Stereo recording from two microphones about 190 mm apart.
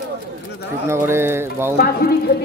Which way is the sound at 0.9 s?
15° right (ahead or behind).